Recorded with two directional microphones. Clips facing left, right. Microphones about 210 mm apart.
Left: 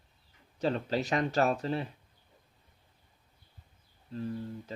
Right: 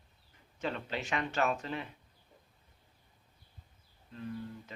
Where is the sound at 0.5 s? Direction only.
35° left (ahead or behind).